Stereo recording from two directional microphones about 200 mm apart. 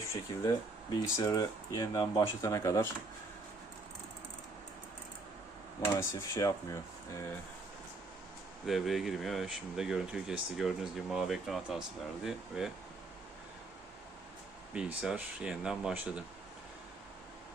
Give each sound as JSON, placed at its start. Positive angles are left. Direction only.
{"t": 0.1, "sound": "speech", "side_deg": 20}
{"t": 5.8, "sound": "speech", "side_deg": 15}
{"t": 8.6, "sound": "speech", "side_deg": 0}
{"t": 14.7, "sound": "speech", "side_deg": -5}